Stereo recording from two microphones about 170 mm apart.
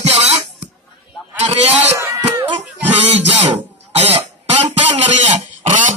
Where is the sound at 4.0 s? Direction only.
35° right (ahead or behind).